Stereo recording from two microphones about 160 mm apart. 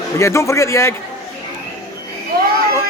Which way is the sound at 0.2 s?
20° left (ahead or behind).